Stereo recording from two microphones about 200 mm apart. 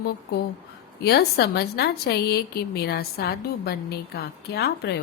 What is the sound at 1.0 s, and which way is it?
A woman's voice, 50° left (ahead or behind).